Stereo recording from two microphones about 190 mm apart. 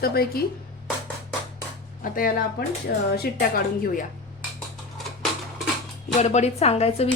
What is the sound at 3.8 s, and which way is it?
Speech, 45° left (ahead or behind).